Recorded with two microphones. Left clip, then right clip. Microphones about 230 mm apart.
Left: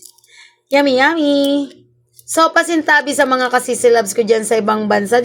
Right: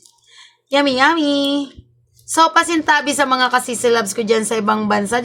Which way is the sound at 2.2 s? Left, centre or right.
Centre.